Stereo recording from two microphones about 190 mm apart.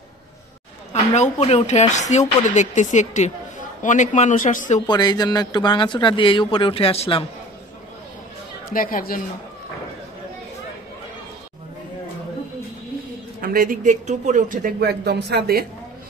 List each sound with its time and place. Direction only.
1.1 s speech: 35° left (ahead or behind)
4.8 s speech: 20° left (ahead or behind)
8.7 s speech: 45° left (ahead or behind)
13.4 s speech: 50° right (ahead or behind)